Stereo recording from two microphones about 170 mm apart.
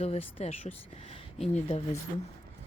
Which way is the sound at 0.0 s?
35° left (ahead or behind).